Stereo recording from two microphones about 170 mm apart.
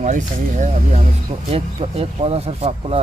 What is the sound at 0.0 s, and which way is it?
Speech, 45° right (ahead or behind).